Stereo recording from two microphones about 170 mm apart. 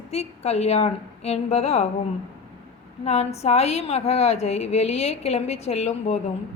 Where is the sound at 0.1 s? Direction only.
40° left (ahead or behind).